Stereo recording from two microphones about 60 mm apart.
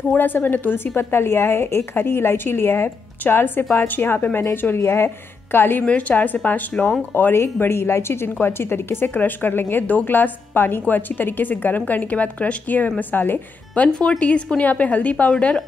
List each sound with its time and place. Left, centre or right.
0.2 s a woman's voice: left
5.9 s a woman's voice: left
13.9 s a woman's voice: centre